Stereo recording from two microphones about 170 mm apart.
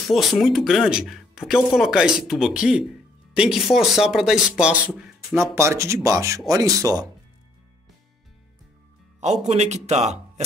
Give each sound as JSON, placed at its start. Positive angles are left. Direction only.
{"t": 0.0, "sound": "speech", "side_deg": 0}
{"t": 9.2, "sound": "speech", "side_deg": -40}